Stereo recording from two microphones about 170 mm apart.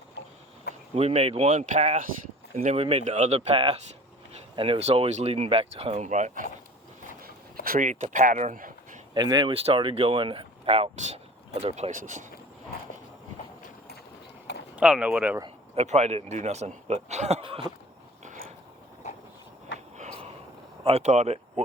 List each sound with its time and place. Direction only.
0.9 s speech: 40° right (ahead or behind)
7.2 s a sound: 60° right (ahead or behind)
9.1 s speech: 25° right (ahead or behind); by 12.2 s 50° right (ahead or behind)
14.8 s speech: 5° right (ahead or behind)
15.7 s speech: 40° right (ahead or behind)
20.8 s speech: 40° right (ahead or behind)